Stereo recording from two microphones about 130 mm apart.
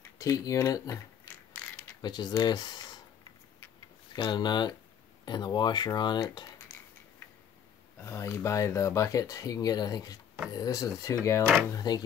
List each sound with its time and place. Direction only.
0.2 s speech: 25° left (ahead or behind)
2.0 s speech: 35° left (ahead or behind)
4.1 s speech: 35° left (ahead or behind)
8.0 s speech: 20° left (ahead or behind)